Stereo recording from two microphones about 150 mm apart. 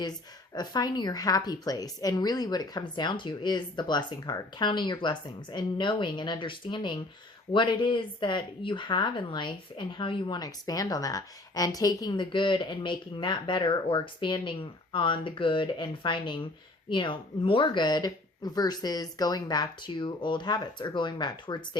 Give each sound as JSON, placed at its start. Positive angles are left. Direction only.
{"t": 0.5, "sound": "a woman's voice", "side_deg": 25}